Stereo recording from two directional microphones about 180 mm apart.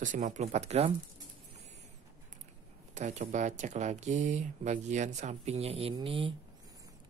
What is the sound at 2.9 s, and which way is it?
Speech, 40° right (ahead or behind).